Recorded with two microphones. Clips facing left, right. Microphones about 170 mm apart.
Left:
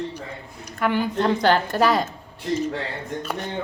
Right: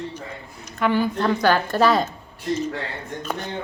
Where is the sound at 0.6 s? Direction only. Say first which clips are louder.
Right 2 dB; 15° left (ahead or behind).